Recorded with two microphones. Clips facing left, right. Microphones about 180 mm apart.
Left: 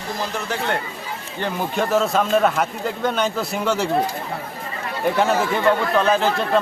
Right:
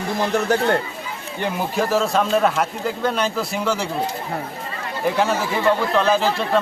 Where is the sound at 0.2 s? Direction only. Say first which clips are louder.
Right 8 dB; 50° right (ahead or behind).